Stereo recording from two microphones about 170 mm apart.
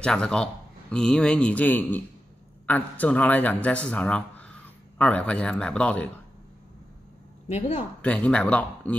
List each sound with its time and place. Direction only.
0.0 s a man's voice: 5° left (ahead or behind)
7.4 s speech: 40° left (ahead or behind)
8.0 s speech: 5° left (ahead or behind)